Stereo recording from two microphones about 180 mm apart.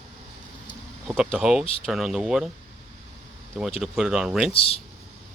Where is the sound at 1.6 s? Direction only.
30° left (ahead or behind).